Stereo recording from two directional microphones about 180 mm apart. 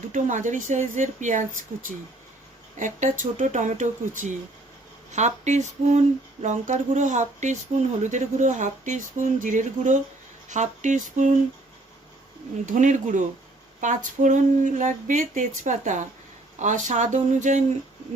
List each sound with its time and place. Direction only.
0.1 s speech: 45° right (ahead or behind)
2.7 s speech: 45° right (ahead or behind)
5.1 s a sound: 40° right (ahead or behind)
6.4 s speech: 40° right (ahead or behind)
12.6 s speech: 45° right (ahead or behind)